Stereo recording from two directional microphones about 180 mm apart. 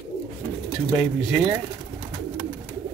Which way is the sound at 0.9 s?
5° right (ahead or behind).